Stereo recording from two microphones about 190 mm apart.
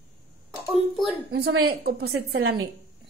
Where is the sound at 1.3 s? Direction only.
55° right (ahead or behind).